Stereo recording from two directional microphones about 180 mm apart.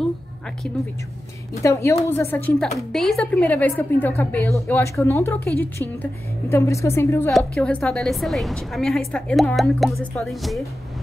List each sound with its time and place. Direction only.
1.5 s a woman's voice: 15° left (ahead or behind)
7.3 s a woman's voice: 5° left (ahead or behind)